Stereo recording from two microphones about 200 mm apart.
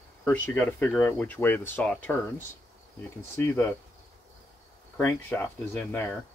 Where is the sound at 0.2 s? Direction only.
10° left (ahead or behind).